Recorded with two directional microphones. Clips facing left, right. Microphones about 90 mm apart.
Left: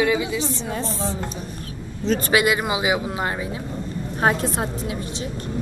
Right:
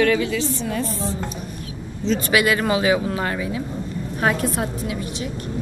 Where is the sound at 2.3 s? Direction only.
20° left (ahead or behind).